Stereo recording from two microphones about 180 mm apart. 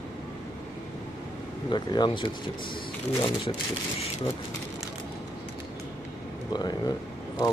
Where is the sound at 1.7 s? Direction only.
25° left (ahead or behind).